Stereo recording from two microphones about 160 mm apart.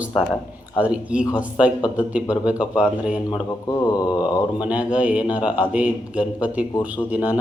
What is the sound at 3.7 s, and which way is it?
Mantra, 25° left (ahead or behind).